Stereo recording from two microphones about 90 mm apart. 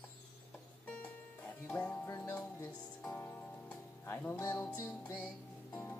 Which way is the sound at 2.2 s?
25° left (ahead or behind).